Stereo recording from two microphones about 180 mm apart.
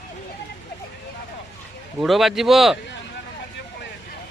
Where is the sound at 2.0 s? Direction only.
Centre (ahead or behind).